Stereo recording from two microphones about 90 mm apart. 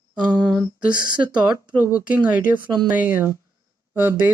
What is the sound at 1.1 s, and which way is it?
Speech, 55° right (ahead or behind).